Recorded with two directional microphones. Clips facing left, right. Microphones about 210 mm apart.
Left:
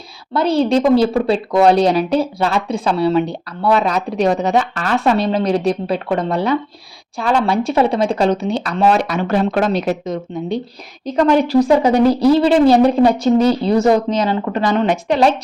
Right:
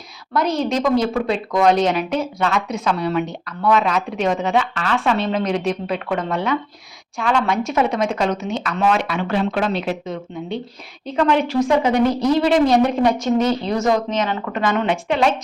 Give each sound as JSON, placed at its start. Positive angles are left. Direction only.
{"t": 0.3, "sound": "a woman's voice", "side_deg": 30}